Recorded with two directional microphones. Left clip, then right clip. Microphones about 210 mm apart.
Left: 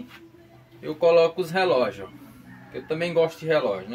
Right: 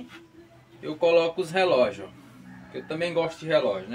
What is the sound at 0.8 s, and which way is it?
Speech, 15° left (ahead or behind).